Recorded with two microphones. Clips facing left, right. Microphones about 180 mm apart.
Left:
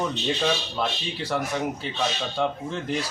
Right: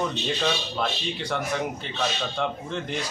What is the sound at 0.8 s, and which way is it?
Speech, 5° left (ahead or behind).